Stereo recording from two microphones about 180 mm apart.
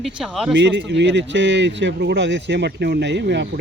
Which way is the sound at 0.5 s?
85° right.